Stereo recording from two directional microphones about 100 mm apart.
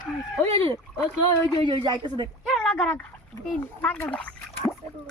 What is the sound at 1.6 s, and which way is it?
Speech, 50° right (ahead or behind).